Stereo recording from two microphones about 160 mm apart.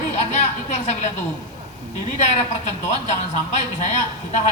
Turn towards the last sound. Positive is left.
turn(degrees=50)  # may be behind; listen again after turning